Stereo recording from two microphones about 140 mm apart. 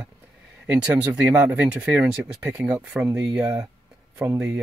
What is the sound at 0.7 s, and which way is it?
Speech, 10° right (ahead or behind).